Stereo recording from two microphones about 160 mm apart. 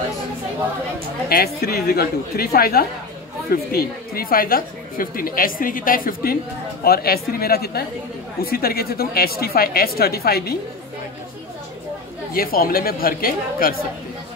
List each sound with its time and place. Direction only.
1.3 s a woman's voice: 75° left (ahead or behind)
12.4 s speech: 65° left (ahead or behind)